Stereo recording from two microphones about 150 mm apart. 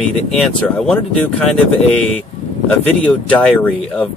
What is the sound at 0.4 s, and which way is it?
Speech, 5° left (ahead or behind).